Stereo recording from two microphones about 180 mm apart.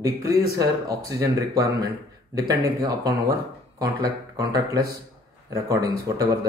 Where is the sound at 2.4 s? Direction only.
20° right (ahead or behind).